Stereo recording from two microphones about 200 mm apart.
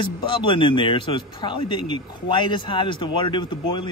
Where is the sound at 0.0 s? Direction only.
25° left (ahead or behind).